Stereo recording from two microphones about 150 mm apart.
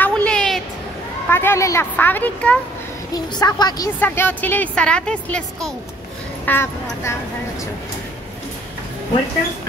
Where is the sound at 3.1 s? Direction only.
25° left (ahead or behind).